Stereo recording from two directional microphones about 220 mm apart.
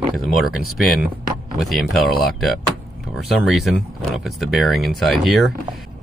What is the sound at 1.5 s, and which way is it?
Speech, centre (ahead or behind).